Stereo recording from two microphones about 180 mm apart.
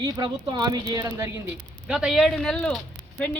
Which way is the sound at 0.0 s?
25° right (ahead or behind).